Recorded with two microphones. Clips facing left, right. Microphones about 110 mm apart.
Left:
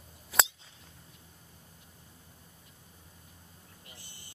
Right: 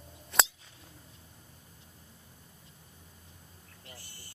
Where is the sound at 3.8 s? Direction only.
20° left (ahead or behind).